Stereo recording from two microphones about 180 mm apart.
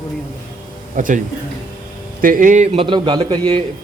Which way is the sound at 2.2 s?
50° right (ahead or behind).